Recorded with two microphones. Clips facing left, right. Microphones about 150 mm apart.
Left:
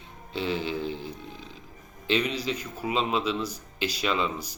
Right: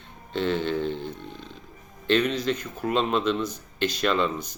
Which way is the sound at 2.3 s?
10° left (ahead or behind).